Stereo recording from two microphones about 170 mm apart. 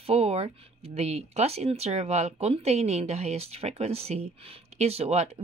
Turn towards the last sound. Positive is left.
turn(degrees=-40)  # may be behind; listen again after turning